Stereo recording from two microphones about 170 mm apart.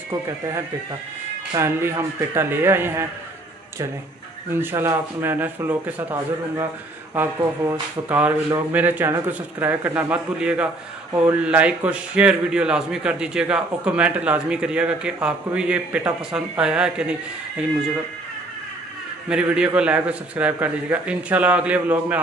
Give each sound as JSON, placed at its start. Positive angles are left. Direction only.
{"t": 1.5, "sound": "a man's voice", "side_deg": -15}
{"t": 4.5, "sound": "a man's voice", "side_deg": -15}
{"t": 7.2, "sound": "speech", "side_deg": -20}
{"t": 8.1, "sound": "a man's voice", "side_deg": -10}
{"t": 19.2, "sound": "a man's voice", "side_deg": -5}